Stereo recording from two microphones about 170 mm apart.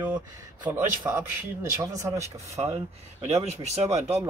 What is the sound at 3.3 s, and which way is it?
Speech, 40° right (ahead or behind).